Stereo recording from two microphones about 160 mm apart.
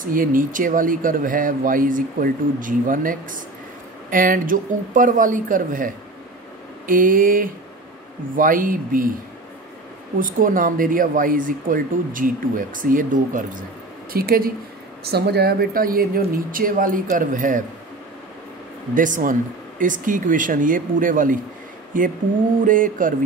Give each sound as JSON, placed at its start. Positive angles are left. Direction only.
{"t": 0.0, "sound": "speech", "side_deg": -60}
{"t": 6.9, "sound": "speech", "side_deg": -60}
{"t": 10.1, "sound": "speech", "side_deg": -60}
{"t": 14.1, "sound": "speech", "side_deg": -70}
{"t": 15.0, "sound": "speech", "side_deg": -90}
{"t": 18.9, "sound": "speech", "side_deg": -55}